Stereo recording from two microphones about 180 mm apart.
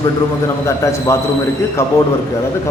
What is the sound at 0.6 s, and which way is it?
Speech, 15° left (ahead or behind).